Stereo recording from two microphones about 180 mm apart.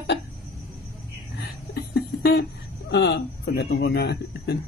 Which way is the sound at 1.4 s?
60° left (ahead or behind).